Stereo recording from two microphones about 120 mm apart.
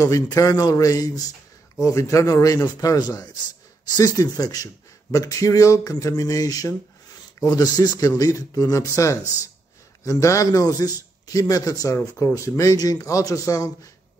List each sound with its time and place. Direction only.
0.0 s a man's voice: 30° left (ahead or behind)